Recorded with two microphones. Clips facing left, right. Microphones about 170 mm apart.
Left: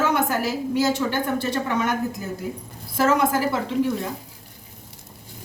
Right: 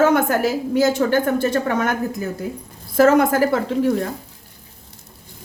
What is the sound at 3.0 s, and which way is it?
Speech, 50° right (ahead or behind).